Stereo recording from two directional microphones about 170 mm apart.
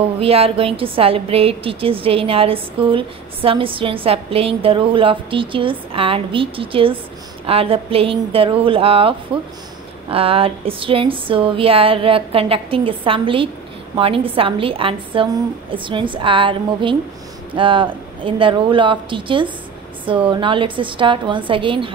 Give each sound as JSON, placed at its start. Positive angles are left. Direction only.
{"t": 0.2, "sound": "a woman's voice", "side_deg": -35}
{"t": 10.1, "sound": "a woman's voice", "side_deg": -35}